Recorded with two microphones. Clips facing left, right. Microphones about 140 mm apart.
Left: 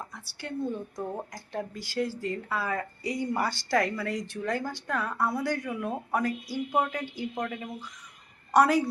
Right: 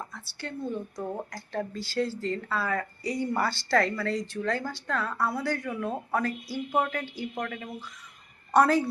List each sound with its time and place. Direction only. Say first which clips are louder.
0.9 s speech: right 1 dB; 15° left (ahead or behind)